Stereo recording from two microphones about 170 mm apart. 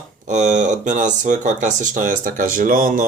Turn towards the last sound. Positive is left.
turn(degrees=-55)  # may be behind; listen again after turning